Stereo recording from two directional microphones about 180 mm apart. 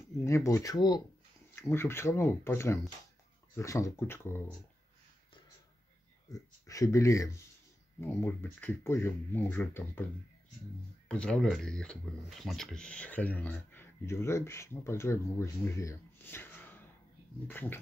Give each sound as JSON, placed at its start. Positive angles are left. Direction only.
{"t": 0.2, "sound": "speech", "side_deg": 15}
{"t": 6.3, "sound": "speech", "side_deg": 20}
{"t": 11.1, "sound": "speech", "side_deg": 5}